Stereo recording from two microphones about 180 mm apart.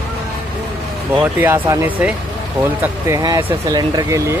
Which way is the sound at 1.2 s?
10° right (ahead or behind).